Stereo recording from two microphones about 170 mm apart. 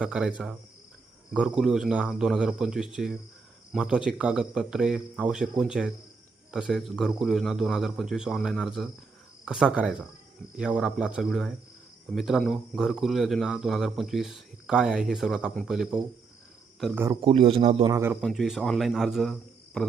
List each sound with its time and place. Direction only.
0.0 s speech: 5° right (ahead or behind)
16.9 s speech: 15° right (ahead or behind)
17.2 s speech: 35° right (ahead or behind)
17.8 s speech: 15° right (ahead or behind)
18.1 s speech: centre (ahead or behind)